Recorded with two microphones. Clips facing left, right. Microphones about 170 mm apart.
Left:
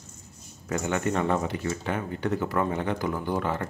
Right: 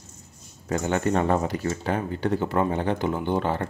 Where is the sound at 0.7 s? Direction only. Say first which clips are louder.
Right 3 dB; 35° right (ahead or behind).